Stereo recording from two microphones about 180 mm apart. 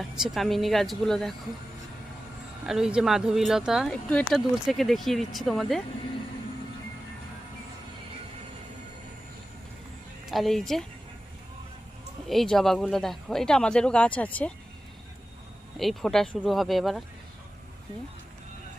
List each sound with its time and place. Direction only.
0.0 s speech: centre (ahead or behind)
2.6 s speech: 5° right (ahead or behind)
10.2 s speech: centre (ahead or behind)
12.3 s speech: centre (ahead or behind)
15.8 s speech: centre (ahead or behind)